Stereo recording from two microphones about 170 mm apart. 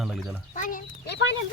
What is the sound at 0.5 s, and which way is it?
Chicken, 50° left (ahead or behind).